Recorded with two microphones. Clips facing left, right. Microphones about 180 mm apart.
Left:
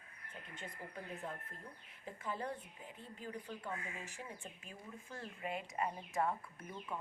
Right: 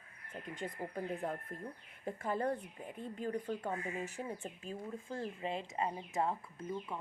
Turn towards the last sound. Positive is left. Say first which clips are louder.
# right 2 dB
turn(degrees=-25)  # may be behind; listen again after turning